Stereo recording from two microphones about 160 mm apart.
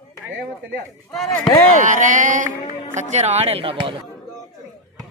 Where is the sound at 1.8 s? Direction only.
55° right (ahead or behind); by 3.9 s 35° right (ahead or behind).